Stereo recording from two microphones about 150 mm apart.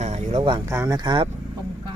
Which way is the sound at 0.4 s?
30° right (ahead or behind).